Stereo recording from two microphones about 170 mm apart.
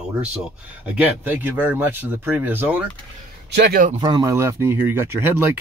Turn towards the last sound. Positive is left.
turn(degrees=-15)  # may be behind; listen again after turning